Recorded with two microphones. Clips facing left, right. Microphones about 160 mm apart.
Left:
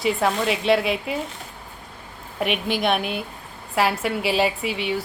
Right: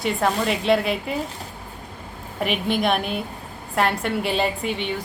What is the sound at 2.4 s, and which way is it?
A woman's voice, centre (ahead or behind).